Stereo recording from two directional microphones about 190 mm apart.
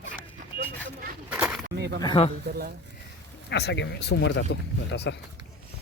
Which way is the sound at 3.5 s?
65° left (ahead or behind).